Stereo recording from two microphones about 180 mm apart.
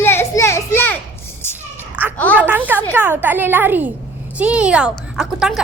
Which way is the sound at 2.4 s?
10° right (ahead or behind).